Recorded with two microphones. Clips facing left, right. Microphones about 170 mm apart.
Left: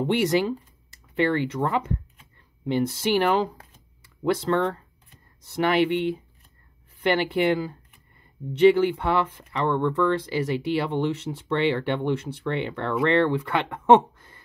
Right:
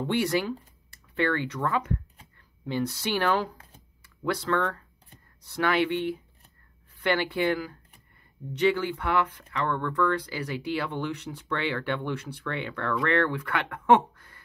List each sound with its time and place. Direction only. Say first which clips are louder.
0.0 s speech: left 4 dB; 20° left (ahead or behind)